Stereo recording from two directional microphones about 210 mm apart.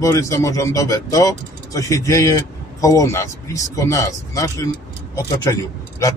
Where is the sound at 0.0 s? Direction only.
15° left (ahead or behind).